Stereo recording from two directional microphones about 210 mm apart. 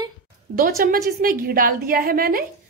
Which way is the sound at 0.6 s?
40° right (ahead or behind).